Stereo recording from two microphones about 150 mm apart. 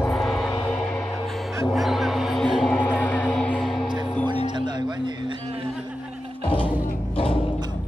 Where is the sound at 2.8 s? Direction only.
10° left (ahead or behind).